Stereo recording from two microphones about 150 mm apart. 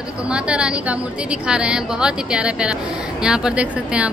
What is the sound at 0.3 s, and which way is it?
A woman's voice, 5° right (ahead or behind).